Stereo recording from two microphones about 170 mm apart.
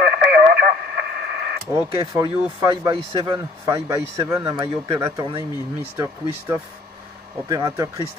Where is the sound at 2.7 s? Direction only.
25° right (ahead or behind).